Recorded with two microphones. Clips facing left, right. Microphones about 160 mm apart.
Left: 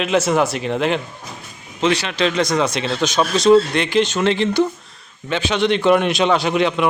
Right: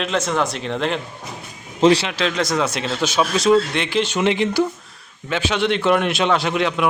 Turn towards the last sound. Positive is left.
turn(degrees=0)  # may be behind; listen again after turning